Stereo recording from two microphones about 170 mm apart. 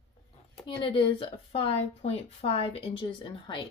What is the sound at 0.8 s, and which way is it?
A woman's voice, 30° left (ahead or behind).